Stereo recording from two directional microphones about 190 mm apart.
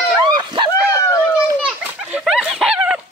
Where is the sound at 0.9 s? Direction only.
15° left (ahead or behind).